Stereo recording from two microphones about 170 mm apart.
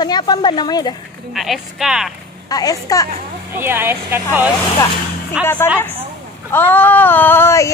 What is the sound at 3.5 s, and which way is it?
Speech, 15° right (ahead or behind).